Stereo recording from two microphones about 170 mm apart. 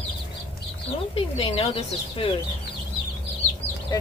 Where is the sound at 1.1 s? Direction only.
35° left (ahead or behind).